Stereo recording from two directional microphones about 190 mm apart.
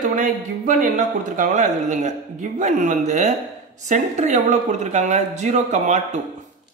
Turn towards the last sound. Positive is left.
turn(degrees=-40)  # may be behind; listen again after turning